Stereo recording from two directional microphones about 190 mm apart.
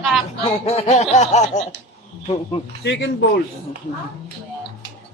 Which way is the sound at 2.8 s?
65° left (ahead or behind).